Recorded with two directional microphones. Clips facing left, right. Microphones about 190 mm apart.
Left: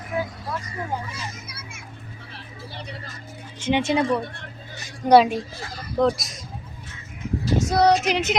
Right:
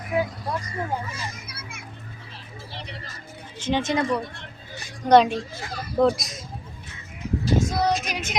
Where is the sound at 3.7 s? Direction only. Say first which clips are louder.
Left 2 dB; 15° left (ahead or behind).